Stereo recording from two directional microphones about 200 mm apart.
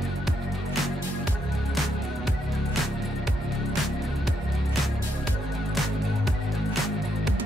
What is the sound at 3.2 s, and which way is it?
Music, centre (ahead or behind).